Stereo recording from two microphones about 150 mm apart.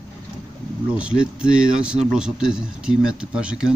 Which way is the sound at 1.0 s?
5° right (ahead or behind).